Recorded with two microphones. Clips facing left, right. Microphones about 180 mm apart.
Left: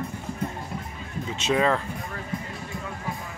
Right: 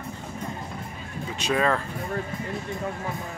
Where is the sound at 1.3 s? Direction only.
20° left (ahead or behind).